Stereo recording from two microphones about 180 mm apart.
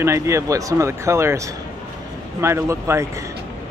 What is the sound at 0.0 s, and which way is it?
Speech, 15° right (ahead or behind).